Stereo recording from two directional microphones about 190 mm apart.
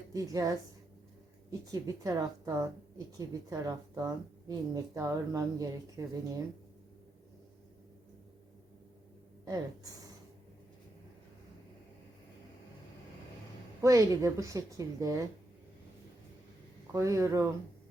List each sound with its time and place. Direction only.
0.1 s a woman's voice: 20° right (ahead or behind)
9.4 s speech: 20° right (ahead or behind)
13.8 s a woman's voice: 15° right (ahead or behind)
16.9 s a woman's voice: 15° right (ahead or behind)